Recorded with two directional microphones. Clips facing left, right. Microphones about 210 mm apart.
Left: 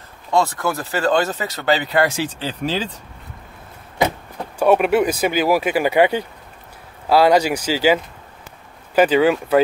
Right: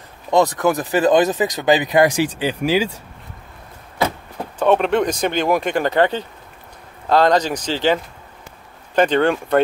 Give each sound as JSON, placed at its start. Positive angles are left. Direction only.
{"t": 0.3, "sound": "speech", "side_deg": -20}
{"t": 4.6, "sound": "speech", "side_deg": 10}